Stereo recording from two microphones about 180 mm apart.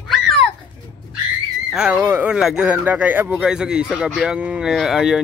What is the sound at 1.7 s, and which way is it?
Speech, 5° right (ahead or behind).